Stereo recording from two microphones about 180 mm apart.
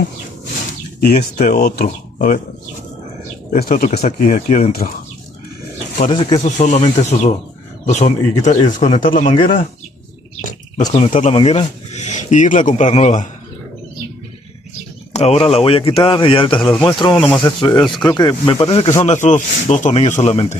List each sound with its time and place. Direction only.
1.1 s speech: 45° left (ahead or behind)
3.5 s speech: 50° left (ahead or behind)
5.9 s speech: 30° left (ahead or behind)
6.4 s speech: 40° left (ahead or behind)
9.3 s speech: 30° left (ahead or behind)
10.9 s speech: 40° left (ahead or behind)
11.3 s speech: 30° left (ahead or behind)
15.1 s speech: 35° left (ahead or behind)
19.0 s speech: 40° left (ahead or behind)